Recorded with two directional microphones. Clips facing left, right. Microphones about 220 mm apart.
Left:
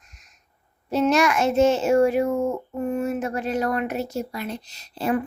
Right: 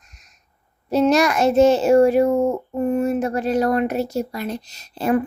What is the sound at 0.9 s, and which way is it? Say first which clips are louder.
A child's voice: right 3 dB; 35° right (ahead or behind).